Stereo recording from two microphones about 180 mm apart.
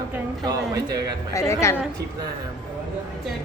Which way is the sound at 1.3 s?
15° left (ahead or behind).